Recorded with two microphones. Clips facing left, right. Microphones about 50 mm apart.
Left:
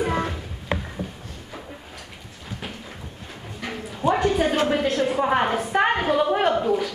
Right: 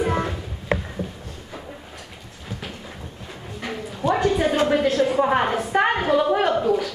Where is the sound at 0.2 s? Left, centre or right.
Right.